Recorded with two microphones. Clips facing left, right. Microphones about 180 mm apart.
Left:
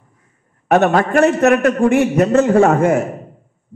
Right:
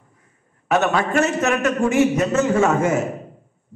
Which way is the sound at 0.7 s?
55° left (ahead or behind).